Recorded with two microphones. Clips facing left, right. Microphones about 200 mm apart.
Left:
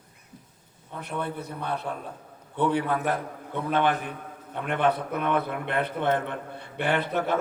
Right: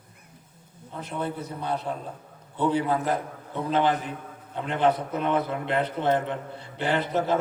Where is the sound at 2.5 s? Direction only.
60° left (ahead or behind).